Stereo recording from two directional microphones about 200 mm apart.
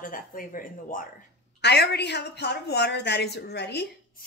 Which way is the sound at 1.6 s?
55° left (ahead or behind).